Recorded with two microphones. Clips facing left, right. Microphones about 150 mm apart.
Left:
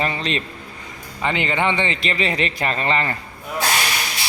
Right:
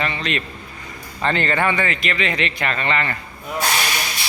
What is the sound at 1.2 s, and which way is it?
A man's voice, 15° left (ahead or behind).